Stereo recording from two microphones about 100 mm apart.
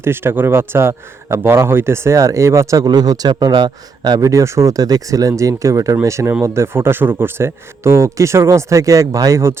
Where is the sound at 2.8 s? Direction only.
40° right (ahead or behind).